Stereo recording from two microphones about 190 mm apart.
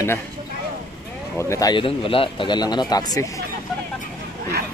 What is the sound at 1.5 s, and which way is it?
Speech, 20° left (ahead or behind).